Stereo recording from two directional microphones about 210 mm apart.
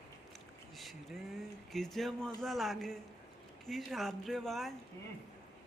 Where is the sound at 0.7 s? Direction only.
Centre (ahead or behind).